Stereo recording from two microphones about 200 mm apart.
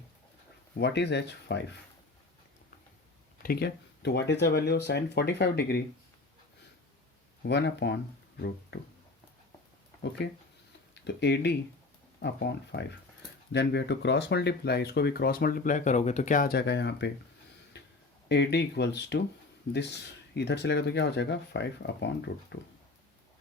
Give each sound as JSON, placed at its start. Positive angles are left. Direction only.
{"t": 0.8, "sound": "speech", "side_deg": 60}
{"t": 3.4, "sound": "speech", "side_deg": 50}
{"t": 7.4, "sound": "speech", "side_deg": 55}
{"t": 10.2, "sound": "speech", "side_deg": 60}
{"t": 17.7, "sound": "a sound", "side_deg": 55}
{"t": 18.3, "sound": "speech", "side_deg": 60}